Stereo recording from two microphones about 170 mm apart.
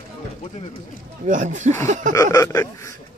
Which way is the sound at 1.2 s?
45° right (ahead or behind).